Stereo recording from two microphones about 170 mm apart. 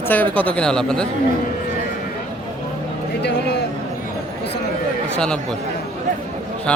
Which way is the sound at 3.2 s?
85° left.